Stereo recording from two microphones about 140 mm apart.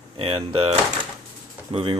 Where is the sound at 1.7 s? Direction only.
45° right (ahead or behind).